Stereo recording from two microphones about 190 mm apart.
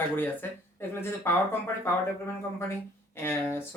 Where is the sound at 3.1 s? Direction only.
10° left (ahead or behind).